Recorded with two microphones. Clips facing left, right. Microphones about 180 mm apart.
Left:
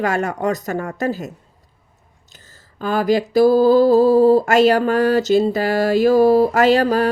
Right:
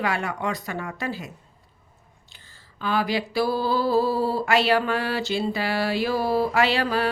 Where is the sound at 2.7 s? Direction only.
45° left (ahead or behind).